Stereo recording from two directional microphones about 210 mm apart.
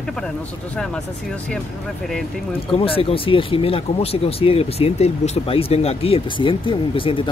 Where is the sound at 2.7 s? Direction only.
25° left (ahead or behind).